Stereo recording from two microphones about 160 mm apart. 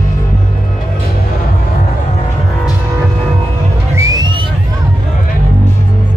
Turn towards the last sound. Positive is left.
turn(degrees=-25)  # may be behind; listen again after turning